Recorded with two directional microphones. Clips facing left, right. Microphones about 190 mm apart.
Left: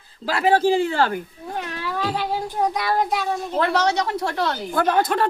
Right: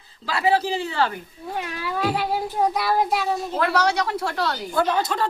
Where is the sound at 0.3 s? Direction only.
50° left (ahead or behind).